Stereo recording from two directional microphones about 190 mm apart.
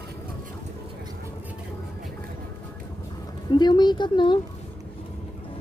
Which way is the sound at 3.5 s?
25° left (ahead or behind).